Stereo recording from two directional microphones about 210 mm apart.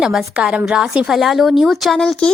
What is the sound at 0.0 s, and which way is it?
A woman's voice, centre (ahead or behind).